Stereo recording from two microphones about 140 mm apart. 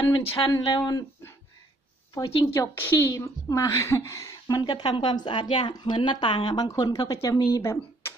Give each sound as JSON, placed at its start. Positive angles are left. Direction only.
{"t": 0.1, "sound": "a woman's voice", "side_deg": 30}
{"t": 2.2, "sound": "a woman's voice", "side_deg": 30}